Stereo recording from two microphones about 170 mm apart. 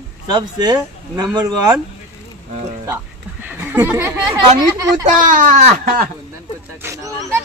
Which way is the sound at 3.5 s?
10° right (ahead or behind).